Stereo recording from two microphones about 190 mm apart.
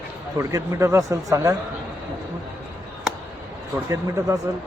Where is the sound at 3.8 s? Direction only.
15° right (ahead or behind).